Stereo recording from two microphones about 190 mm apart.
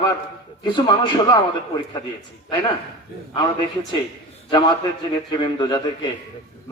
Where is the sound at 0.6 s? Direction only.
25° left (ahead or behind).